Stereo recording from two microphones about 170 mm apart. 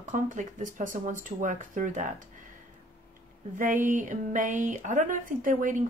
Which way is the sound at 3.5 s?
50° right (ahead or behind).